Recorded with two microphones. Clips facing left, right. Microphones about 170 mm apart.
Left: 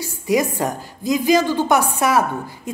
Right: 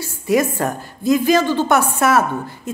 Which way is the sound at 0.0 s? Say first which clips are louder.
Right 2 dB; 15° left (ahead or behind).